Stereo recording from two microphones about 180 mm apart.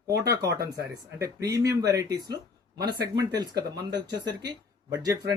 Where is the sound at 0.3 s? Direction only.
20° right (ahead or behind).